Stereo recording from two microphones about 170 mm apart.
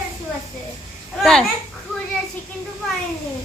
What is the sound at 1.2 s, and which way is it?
Speech, 5° left (ahead or behind).